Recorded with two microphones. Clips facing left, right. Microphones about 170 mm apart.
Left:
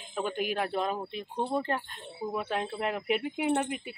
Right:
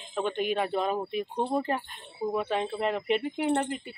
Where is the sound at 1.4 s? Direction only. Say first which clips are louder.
Right 1 dB; 15° right (ahead or behind).